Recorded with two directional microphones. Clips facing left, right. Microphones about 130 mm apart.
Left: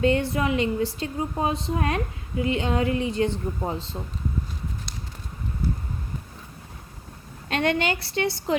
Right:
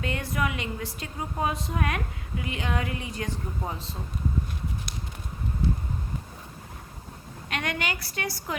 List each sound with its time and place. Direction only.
0.0 s a woman's voice: 30° left (ahead or behind)
7.5 s a woman's voice: 30° left (ahead or behind)